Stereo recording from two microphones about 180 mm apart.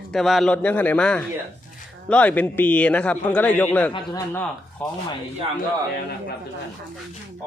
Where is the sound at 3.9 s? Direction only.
25° left (ahead or behind).